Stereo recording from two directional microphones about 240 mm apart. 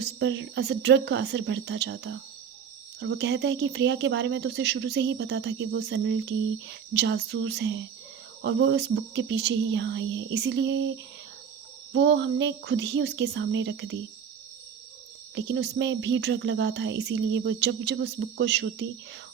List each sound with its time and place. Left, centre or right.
0.0 s speech: right
15.4 s speech: right